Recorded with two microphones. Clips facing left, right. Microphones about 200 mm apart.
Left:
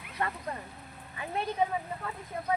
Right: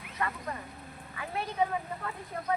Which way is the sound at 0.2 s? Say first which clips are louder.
Left 1 dB; 30° left (ahead or behind).